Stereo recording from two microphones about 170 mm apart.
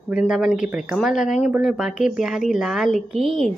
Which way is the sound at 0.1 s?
5° right (ahead or behind).